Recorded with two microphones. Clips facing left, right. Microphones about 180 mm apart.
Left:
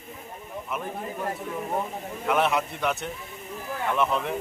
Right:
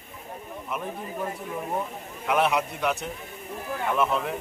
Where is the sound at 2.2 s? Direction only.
Centre (ahead or behind).